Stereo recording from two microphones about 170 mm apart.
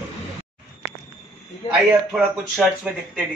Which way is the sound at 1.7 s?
5° right (ahead or behind).